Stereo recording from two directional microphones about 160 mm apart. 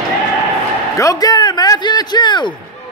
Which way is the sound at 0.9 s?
20° left (ahead or behind).